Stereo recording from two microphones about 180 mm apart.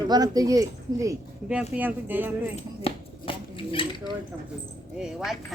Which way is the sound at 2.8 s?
30° left (ahead or behind).